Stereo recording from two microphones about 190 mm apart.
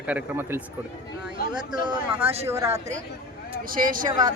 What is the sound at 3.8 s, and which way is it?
Speech, 45° right (ahead or behind).